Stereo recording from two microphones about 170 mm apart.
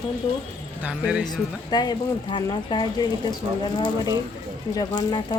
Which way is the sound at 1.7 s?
25° left (ahead or behind).